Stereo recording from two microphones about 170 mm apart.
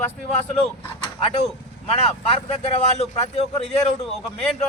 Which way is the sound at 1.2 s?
35° left (ahead or behind).